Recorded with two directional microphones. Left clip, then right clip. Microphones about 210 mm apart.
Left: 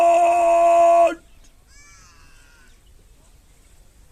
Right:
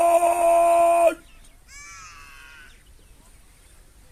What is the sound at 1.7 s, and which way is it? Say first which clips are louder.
Crow: right 8 dB; 30° left (ahead or behind).